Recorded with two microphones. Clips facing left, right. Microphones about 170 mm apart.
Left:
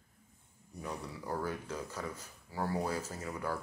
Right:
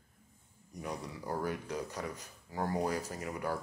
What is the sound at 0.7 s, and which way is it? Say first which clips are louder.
Speech: right 1 dB; 15° right (ahead or behind).